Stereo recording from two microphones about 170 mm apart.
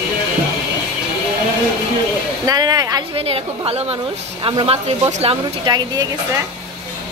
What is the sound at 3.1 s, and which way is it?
Speech, 35° right (ahead or behind).